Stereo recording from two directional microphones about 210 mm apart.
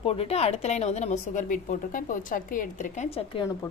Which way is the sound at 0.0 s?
30° left (ahead or behind).